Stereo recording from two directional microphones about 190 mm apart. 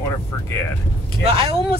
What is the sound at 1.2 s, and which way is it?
Speech, 30° right (ahead or behind).